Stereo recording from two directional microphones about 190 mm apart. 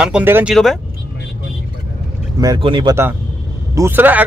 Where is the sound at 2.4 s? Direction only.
25° right (ahead or behind).